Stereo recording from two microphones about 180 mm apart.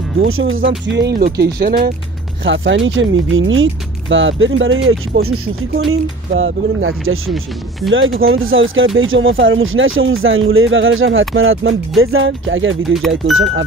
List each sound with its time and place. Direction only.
0.2 s speech: 90° right; by 1.2 s 75° right (ahead or behind)
1.4 s speech: 55° right (ahead or behind)
2.4 s speech: 90° right
7.9 s speech: 90° right
12.8 s speech: centre (ahead or behind)
13.4 s speech: 90° right